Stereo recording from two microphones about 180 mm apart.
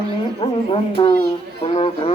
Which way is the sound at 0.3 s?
30° left (ahead or behind).